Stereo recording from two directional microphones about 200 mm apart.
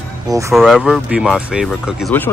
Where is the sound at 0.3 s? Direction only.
15° right (ahead or behind).